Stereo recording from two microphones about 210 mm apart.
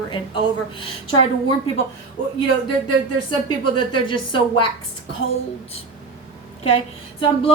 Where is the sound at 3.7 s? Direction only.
25° left (ahead or behind).